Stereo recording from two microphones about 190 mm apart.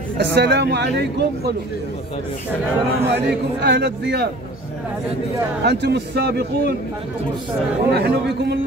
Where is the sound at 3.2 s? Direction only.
60° right (ahead or behind).